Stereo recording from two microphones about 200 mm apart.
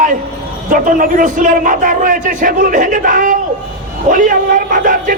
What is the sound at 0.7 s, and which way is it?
A man's voice, 45° right (ahead or behind).